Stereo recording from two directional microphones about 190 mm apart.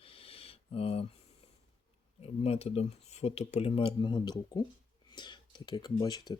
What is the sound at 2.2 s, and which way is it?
Speech, 30° left (ahead or behind).